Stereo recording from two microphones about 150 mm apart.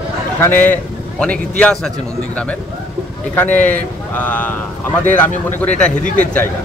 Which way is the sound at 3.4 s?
10° left (ahead or behind).